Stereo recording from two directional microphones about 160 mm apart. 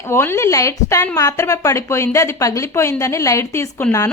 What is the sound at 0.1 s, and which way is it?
A woman's voice, 15° left (ahead or behind).